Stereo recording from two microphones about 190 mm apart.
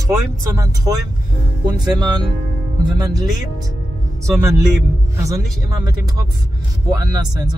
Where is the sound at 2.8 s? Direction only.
20° right (ahead or behind).